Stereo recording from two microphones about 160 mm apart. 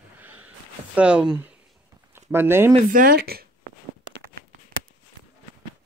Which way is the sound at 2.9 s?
65° right (ahead or behind).